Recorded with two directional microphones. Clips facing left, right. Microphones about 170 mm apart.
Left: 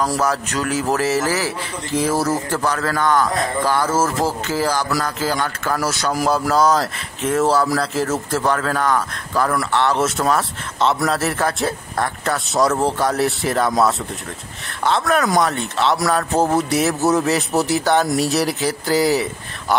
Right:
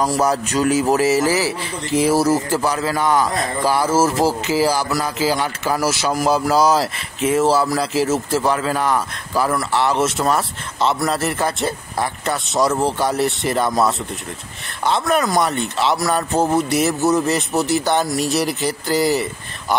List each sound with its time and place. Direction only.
0.2 s a man's voice: 20° right (ahead or behind); by 19.2 s centre (ahead or behind)